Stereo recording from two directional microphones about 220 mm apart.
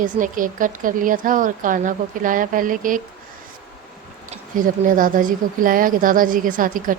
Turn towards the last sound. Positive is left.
turn(degrees=-40)  # may be behind; listen again after turning